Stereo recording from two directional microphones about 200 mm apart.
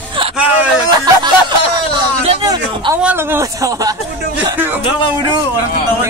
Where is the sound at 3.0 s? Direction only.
10° right (ahead or behind).